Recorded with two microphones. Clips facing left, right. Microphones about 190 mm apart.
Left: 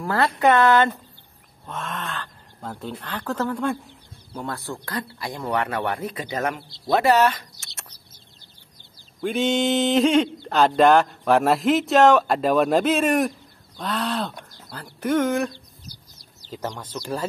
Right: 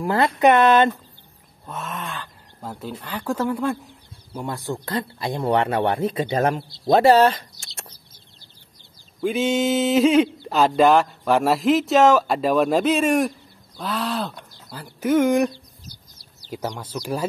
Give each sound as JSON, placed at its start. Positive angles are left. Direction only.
{"t": 0.0, "sound": "speech", "side_deg": -20}
{"t": 1.7, "sound": "speech", "side_deg": -5}
{"t": 4.5, "sound": "speech", "side_deg": -15}
{"t": 8.7, "sound": "a sound", "side_deg": 0}
{"t": 13.7, "sound": "speech", "side_deg": 0}
{"t": 16.7, "sound": "speech", "side_deg": -10}